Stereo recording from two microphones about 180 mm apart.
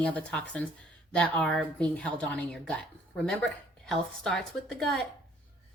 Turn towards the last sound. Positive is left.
turn(degrees=0)  # may be behind; listen again after turning